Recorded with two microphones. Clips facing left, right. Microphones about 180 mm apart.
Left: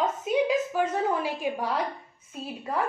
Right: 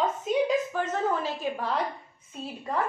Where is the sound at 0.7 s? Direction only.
10° left (ahead or behind).